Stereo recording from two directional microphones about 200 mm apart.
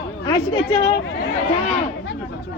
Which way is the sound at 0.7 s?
30° left (ahead or behind).